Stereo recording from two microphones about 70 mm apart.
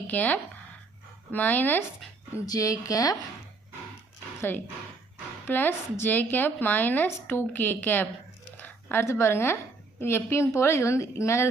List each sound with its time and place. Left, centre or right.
0.1 s a woman's voice: left
2.5 s a woman's voice: left
4.4 s a woman's voice: left
8.5 s a sound: left
9.0 s a woman's voice: left